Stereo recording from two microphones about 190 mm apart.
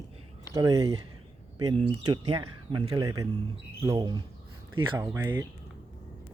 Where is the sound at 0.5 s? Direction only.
20° right (ahead or behind).